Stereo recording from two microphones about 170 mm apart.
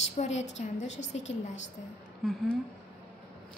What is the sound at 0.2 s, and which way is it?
Speech, 40° left (ahead or behind).